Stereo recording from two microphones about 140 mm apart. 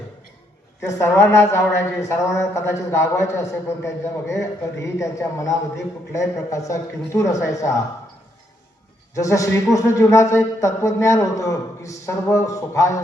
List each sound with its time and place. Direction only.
0.9 s speech: 20° left (ahead or behind)
9.1 s speech: 25° left (ahead or behind)